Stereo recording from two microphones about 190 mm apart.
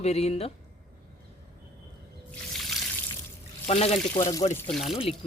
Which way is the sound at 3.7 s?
35° left (ahead or behind).